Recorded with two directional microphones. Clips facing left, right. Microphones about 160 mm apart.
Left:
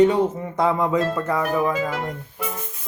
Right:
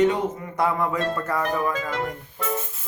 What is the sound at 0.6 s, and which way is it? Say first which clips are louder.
Speech: left 3 dB; 20° left (ahead or behind).